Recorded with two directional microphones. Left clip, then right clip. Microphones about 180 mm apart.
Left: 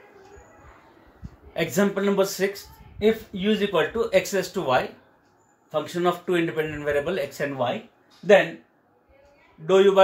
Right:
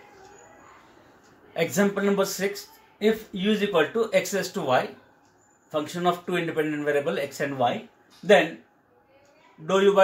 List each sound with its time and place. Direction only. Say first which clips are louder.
1.5 s speech: even; 20° left (ahead or behind)
9.7 s speech: left 3 dB; 15° left (ahead or behind)